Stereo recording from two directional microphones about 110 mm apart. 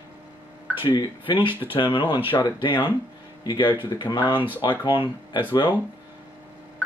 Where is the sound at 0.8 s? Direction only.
45° left (ahead or behind).